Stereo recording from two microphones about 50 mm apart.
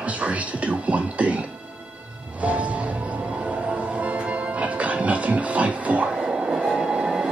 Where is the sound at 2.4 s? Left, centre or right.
Right.